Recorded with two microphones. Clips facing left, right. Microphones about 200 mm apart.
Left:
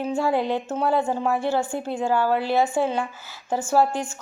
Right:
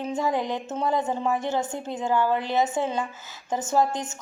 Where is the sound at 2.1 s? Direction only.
20° right (ahead or behind).